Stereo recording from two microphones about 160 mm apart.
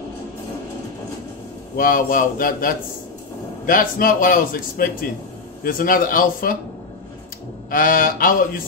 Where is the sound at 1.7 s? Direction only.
65° left (ahead or behind).